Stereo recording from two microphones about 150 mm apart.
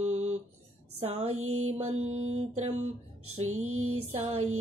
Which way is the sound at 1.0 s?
45° right (ahead or behind).